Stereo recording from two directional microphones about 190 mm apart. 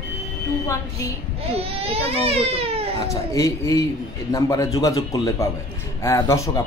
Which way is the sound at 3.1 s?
15° left (ahead or behind).